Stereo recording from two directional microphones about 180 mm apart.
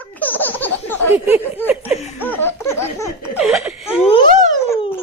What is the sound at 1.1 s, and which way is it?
Laughter, 10° right (ahead or behind).